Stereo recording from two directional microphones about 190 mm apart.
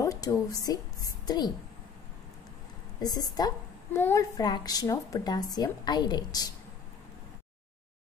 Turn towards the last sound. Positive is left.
turn(degrees=20)  # may be behind; listen again after turning